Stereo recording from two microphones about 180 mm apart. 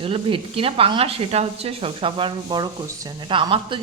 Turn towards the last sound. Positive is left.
turn(degrees=-25)  # may be behind; listen again after turning